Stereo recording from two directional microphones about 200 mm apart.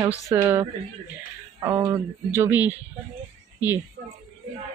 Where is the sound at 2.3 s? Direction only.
10° right (ahead or behind).